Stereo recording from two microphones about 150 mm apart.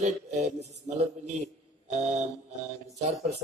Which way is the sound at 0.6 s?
45° right (ahead or behind).